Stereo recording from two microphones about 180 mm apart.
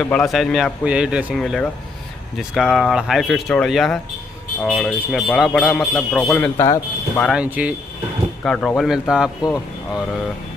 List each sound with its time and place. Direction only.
0.0 s speech: 5° left (ahead or behind)
6.5 s speech: 20° left (ahead or behind)
7.2 s speech: centre (ahead or behind)
8.5 s speech: 5° left (ahead or behind)